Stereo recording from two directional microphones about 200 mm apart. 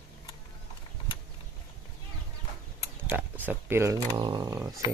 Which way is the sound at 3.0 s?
10° right (ahead or behind).